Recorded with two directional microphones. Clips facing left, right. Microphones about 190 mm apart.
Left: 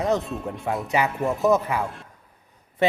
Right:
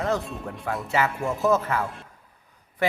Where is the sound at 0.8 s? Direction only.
15° left (ahead or behind).